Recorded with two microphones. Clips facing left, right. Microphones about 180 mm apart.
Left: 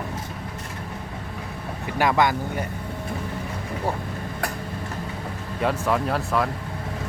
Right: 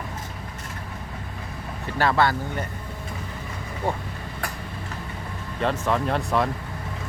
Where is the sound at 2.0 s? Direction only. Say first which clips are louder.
Left 1 dB; 15° left (ahead or behind).